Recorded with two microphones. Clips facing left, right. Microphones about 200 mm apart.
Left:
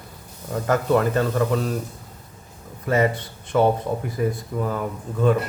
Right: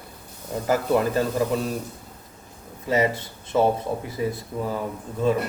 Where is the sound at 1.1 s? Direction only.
10° right (ahead or behind).